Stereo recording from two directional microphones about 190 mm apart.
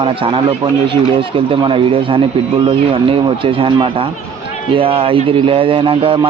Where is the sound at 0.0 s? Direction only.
30° right (ahead or behind).